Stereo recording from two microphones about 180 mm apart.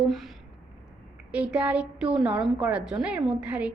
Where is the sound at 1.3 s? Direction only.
5° right (ahead or behind).